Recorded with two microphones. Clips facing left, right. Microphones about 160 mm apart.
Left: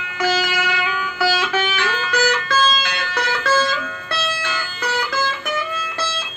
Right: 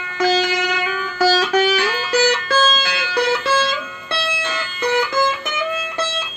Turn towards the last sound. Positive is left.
turn(degrees=-25)  # may be behind; listen again after turning